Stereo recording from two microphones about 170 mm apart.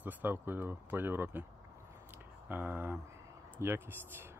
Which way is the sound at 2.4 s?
10° right (ahead or behind).